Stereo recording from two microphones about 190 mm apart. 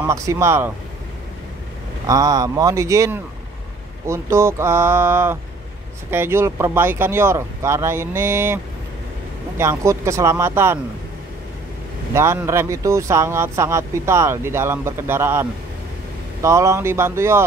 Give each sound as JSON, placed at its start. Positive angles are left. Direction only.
{"t": 0.0, "sound": "speech", "side_deg": -15}
{"t": 2.0, "sound": "speech", "side_deg": -20}
{"t": 9.6, "sound": "speech", "side_deg": -15}
{"t": 12.1, "sound": "speech", "side_deg": -15}
{"t": 16.4, "sound": "speech", "side_deg": -15}